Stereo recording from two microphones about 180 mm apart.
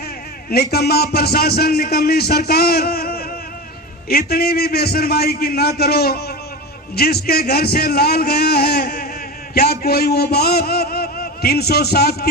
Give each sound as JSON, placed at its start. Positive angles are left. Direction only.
{"t": 0.5, "sound": "a man's voice", "side_deg": 60}